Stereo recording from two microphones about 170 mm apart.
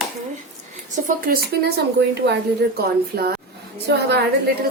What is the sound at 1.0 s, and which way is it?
Speech, 65° right (ahead or behind).